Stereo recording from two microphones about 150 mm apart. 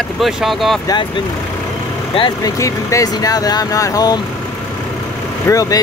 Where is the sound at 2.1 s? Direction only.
35° left (ahead or behind).